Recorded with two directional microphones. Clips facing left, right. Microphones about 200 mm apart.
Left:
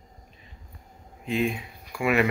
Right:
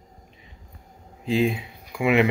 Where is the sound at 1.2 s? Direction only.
30° right (ahead or behind).